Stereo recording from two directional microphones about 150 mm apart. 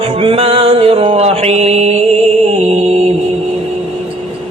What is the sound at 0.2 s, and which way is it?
Mantra, 40° right (ahead or behind).